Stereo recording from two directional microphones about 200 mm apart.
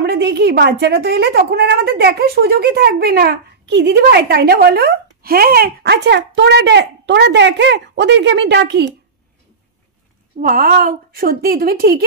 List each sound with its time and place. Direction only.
0.0 s a woman's voice: 55° right (ahead or behind)
10.4 s a woman's voice: 45° right (ahead or behind)